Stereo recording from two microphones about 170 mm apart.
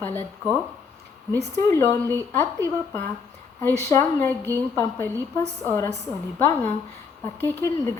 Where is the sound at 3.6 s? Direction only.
15° left (ahead or behind).